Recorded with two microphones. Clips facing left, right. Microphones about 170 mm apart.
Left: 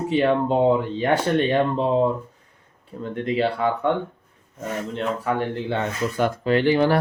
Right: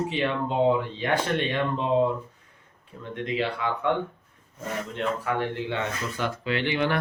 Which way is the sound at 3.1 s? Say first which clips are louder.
Left 5 dB; 40° left (ahead or behind).